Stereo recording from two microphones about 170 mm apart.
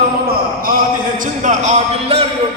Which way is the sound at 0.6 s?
55° right (ahead or behind).